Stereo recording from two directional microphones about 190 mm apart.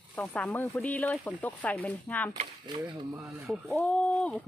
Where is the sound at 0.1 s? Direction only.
10° left (ahead or behind).